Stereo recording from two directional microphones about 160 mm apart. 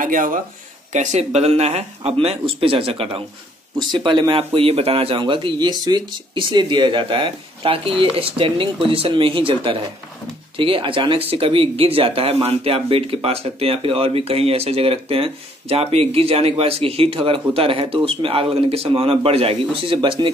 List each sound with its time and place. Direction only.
0.0 s speech: 55° right (ahead or behind)
0.9 s speech: 45° right (ahead or behind)